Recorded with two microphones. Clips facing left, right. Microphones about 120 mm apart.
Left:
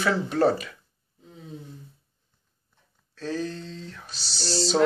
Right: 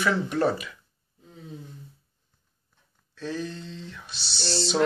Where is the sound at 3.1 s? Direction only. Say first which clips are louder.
Left 2 dB; 40° left (ahead or behind).